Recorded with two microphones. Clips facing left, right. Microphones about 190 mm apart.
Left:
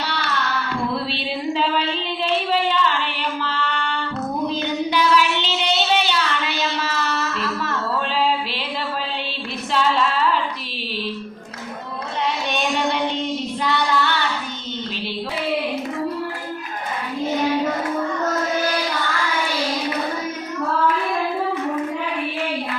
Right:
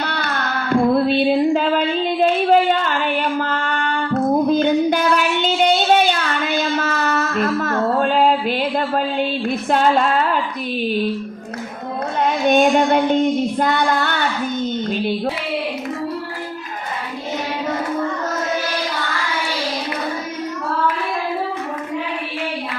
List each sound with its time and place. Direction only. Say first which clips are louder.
0.0 s child singing: right 2 dB; 50° right (ahead or behind)
9.6 s a sound: right 3 dB; 50° right (ahead or behind)
12.2 s child singing: right 10 dB; 45° right (ahead or behind)